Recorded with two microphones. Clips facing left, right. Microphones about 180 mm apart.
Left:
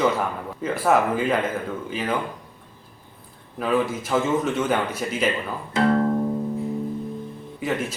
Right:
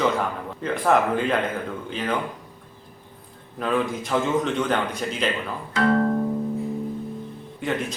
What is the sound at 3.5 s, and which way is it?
A man's voice, 5° left (ahead or behind).